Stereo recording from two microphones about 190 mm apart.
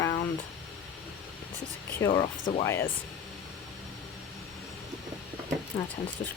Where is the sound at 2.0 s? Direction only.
15° left (ahead or behind).